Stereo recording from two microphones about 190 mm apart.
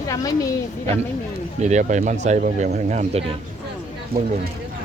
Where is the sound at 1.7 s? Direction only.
40° right (ahead or behind).